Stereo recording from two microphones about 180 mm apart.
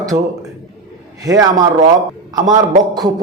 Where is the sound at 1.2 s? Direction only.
20° right (ahead or behind).